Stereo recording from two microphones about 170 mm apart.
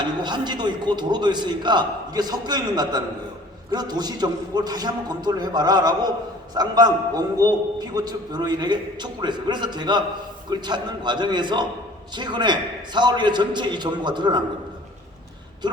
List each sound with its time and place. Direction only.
0.0 s a man's voice: 25° right (ahead or behind)
15.6 s a man's voice: 25° right (ahead or behind)